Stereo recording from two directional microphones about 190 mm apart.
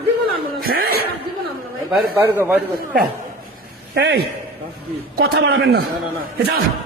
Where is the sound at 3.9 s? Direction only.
65° right (ahead or behind).